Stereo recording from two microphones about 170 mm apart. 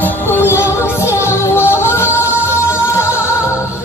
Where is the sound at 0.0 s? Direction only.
15° left (ahead or behind).